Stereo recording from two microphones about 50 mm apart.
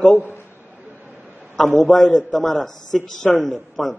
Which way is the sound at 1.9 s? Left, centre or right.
Centre.